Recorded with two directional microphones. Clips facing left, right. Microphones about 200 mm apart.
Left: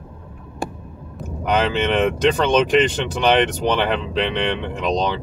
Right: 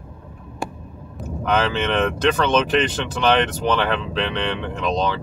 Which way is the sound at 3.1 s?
15° left (ahead or behind).